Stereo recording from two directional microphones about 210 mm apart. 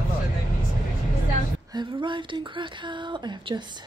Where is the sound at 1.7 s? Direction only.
20° right (ahead or behind).